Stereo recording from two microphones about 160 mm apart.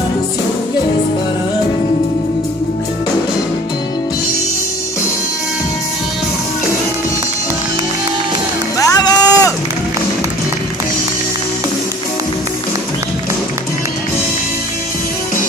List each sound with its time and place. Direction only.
8.7 s music: 20° left (ahead or behind)